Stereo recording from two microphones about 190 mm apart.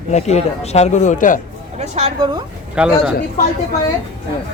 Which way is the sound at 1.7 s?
35° right (ahead or behind).